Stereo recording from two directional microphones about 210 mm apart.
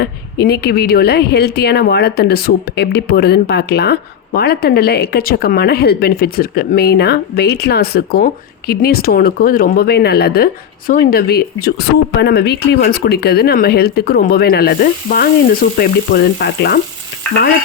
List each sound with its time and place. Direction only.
0.0 s speech: 50° left (ahead or behind)